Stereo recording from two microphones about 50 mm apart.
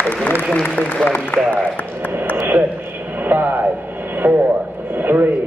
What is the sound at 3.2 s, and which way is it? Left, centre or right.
Speech, right.